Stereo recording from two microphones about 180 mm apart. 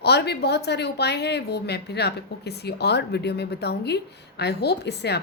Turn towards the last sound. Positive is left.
turn(degrees=70)  # may be behind; listen again after turning